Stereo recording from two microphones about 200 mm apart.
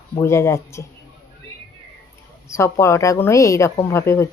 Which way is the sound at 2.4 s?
15° left (ahead or behind).